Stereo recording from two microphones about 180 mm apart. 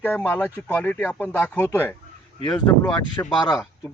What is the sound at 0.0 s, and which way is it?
Speech, 10° left (ahead or behind).